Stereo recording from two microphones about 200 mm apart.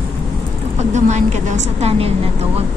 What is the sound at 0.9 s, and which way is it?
Vehicle, 35° right (ahead or behind).